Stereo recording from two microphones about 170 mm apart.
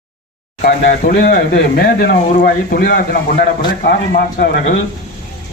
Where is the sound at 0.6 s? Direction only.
65° left (ahead or behind).